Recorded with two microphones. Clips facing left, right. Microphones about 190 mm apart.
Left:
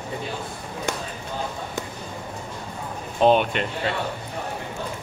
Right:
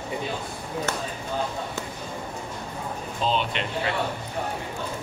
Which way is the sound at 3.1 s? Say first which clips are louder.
Left 9 dB; 60° left (ahead or behind).